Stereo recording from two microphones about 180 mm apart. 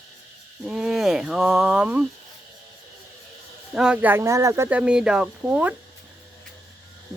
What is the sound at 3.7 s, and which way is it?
Speech, 5° right (ahead or behind).